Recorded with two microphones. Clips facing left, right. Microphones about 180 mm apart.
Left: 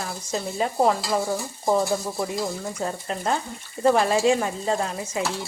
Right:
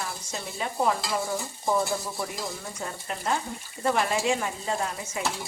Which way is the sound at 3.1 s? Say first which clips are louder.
Even; 35° left (ahead or behind).